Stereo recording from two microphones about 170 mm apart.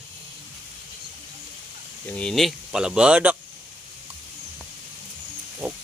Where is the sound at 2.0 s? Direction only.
5° left (ahead or behind).